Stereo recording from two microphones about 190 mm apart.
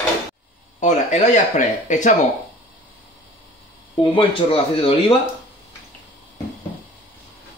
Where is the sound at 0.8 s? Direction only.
40° left (ahead or behind).